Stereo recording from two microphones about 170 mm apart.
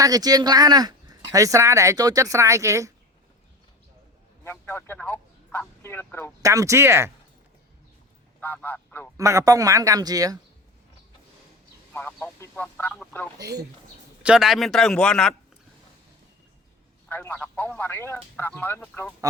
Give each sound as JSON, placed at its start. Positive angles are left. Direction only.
{"t": 0.0, "sound": "speech", "side_deg": -20}
{"t": 4.4, "sound": "speech", "side_deg": 15}
{"t": 6.4, "sound": "speech", "side_deg": -20}
{"t": 8.4, "sound": "speech", "side_deg": 10}
{"t": 9.1, "sound": "speech", "side_deg": -20}
{"t": 11.9, "sound": "speech", "side_deg": 10}
{"t": 13.4, "sound": "speech", "side_deg": -70}
{"t": 14.2, "sound": "a man's voice", "side_deg": -5}
{"t": 17.1, "sound": "speech", "side_deg": 10}